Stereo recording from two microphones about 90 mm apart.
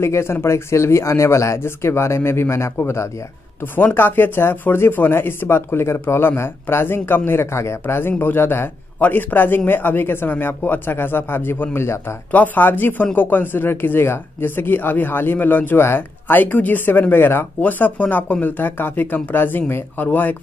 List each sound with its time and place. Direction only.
0.0 s a man's voice: 30° left (ahead or behind)